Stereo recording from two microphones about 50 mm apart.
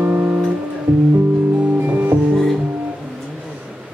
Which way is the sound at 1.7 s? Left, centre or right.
Right.